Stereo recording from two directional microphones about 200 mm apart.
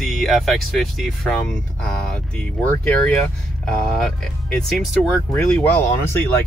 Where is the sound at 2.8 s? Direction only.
5° left (ahead or behind).